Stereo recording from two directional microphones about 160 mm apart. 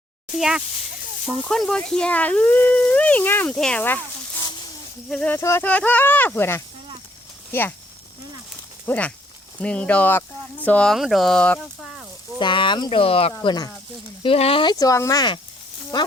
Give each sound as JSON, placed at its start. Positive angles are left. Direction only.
{"t": 0.3, "sound": "speech", "side_deg": -5}
{"t": 5.0, "sound": "speech", "side_deg": 5}
{"t": 5.4, "sound": "speech", "side_deg": 15}
{"t": 8.9, "sound": "speech", "side_deg": 10}
{"t": 12.4, "sound": "speech", "side_deg": 30}
{"t": 13.4, "sound": "speech", "side_deg": 25}
{"t": 14.2, "sound": "speech", "side_deg": 35}